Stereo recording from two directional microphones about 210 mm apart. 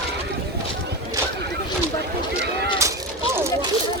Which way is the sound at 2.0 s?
50° right (ahead or behind).